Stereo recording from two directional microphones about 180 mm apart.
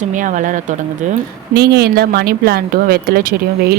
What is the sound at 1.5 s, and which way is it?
Speech, 60° right (ahead or behind).